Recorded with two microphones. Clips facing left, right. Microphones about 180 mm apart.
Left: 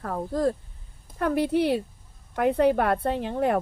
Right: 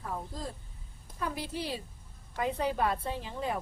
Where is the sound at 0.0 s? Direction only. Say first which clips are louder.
Left 13 dB; 65° left (ahead or behind).